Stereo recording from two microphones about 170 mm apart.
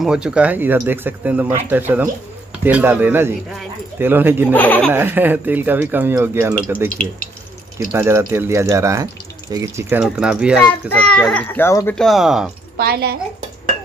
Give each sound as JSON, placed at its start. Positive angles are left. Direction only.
{"t": 0.0, "sound": "speech", "side_deg": -5}
{"t": 4.5, "sound": "a child's voice", "side_deg": 10}
{"t": 4.9, "sound": "speech", "side_deg": -10}
{"t": 7.9, "sound": "speech", "side_deg": -15}
{"t": 10.7, "sound": "a child's voice", "side_deg": 5}
{"t": 12.0, "sound": "speech", "side_deg": 0}
{"t": 12.7, "sound": "a woman's voice", "side_deg": -70}